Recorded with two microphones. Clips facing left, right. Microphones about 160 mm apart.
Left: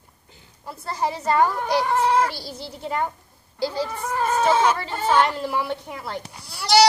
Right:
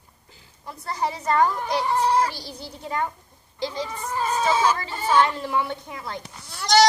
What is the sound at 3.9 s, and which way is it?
Speech, 60° left (ahead or behind).